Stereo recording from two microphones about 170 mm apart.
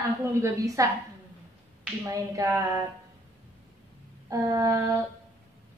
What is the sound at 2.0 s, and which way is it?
Speech, 20° right (ahead or behind).